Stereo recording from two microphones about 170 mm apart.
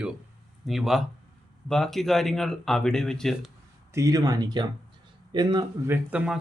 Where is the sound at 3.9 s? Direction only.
20° right (ahead or behind).